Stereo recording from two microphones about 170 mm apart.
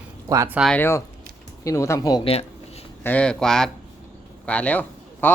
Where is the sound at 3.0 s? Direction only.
10° left (ahead or behind).